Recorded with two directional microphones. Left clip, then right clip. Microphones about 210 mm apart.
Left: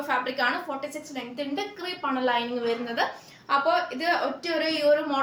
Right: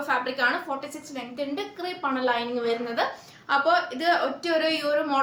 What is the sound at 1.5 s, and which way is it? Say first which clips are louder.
A woman's voice: even; 15° right (ahead or behind).